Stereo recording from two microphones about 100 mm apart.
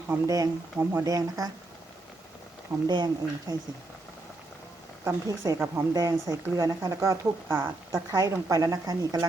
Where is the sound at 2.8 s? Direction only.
50° right (ahead or behind).